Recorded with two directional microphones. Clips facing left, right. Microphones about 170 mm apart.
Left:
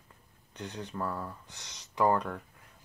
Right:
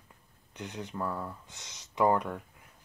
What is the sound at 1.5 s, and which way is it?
Speech, 20° right (ahead or behind).